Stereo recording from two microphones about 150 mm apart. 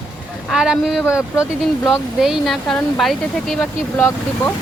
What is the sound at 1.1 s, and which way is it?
Speech, 20° left (ahead or behind).